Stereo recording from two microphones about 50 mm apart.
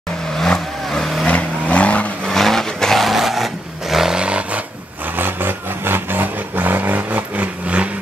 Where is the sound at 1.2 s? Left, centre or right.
Left.